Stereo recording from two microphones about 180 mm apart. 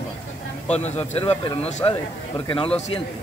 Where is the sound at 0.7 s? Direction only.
35° left (ahead or behind).